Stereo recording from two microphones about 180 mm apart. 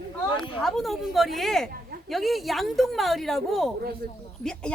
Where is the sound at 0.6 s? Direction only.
Centre (ahead or behind).